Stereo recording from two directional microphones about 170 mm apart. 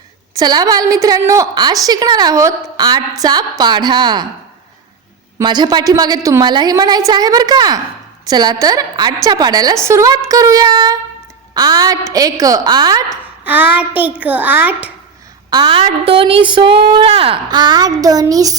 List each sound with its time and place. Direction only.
0.3 s a woman's voice: 25° right (ahead or behind)
5.4 s a woman's voice: 25° right (ahead or behind)
13.4 s a child's voice: 10° right (ahead or behind)
15.4 s a woman's voice: 25° right (ahead or behind)